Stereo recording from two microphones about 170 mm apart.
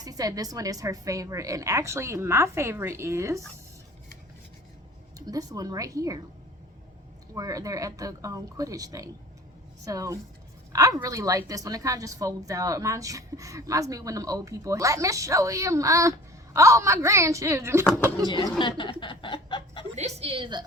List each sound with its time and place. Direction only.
0.0 s a woman's voice: 20° right (ahead or behind)
5.2 s a woman's voice: 20° right (ahead or behind)
7.3 s a woman's voice: 20° right (ahead or behind)
18.6 s speech: 30° left (ahead or behind)
20.0 s a woman's voice: 40° right (ahead or behind)